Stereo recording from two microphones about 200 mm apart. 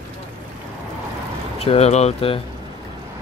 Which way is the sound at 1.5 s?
30° left (ahead or behind).